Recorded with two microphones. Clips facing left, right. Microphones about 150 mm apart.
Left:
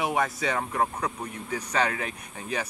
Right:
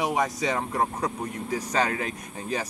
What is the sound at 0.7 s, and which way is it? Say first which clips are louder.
Speech: right 1 dB; 35° right (ahead or behind).